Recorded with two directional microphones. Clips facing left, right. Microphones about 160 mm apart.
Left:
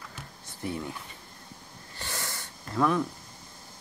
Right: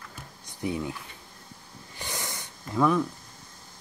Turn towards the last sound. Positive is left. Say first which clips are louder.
# right 2 dB
turn(degrees=0)  # may be behind; listen again after turning